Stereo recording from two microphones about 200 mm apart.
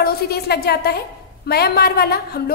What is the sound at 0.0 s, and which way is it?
A woman's voice, 55° left (ahead or behind).